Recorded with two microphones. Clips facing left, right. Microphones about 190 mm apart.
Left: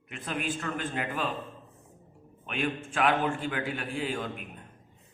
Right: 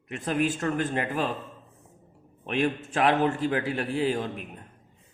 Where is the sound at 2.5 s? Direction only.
40° right (ahead or behind).